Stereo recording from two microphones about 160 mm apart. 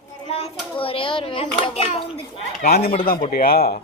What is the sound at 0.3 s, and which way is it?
A child's voice, 35° left (ahead or behind).